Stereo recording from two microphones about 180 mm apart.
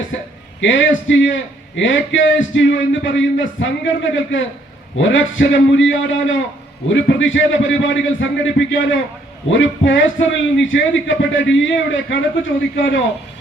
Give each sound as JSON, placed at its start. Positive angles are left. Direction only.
{"t": 0.6, "sound": "a man's voice", "side_deg": 90}